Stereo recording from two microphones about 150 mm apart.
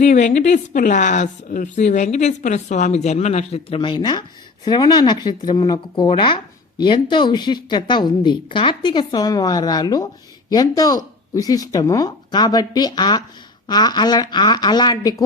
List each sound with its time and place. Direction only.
0.0 s a woman's voice: 55° left (ahead or behind); by 15.2 s 25° left (ahead or behind)